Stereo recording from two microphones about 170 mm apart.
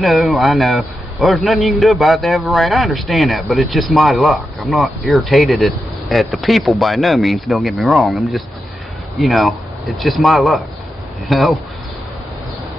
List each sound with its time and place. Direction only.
0.0 s a man's voice: centre (ahead or behind)